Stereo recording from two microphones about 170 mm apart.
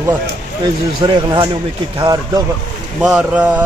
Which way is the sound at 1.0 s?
25° right (ahead or behind).